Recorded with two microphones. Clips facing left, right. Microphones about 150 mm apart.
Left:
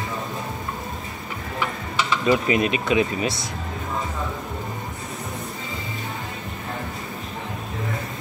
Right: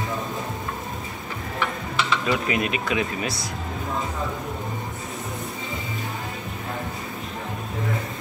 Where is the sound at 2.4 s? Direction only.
25° left (ahead or behind).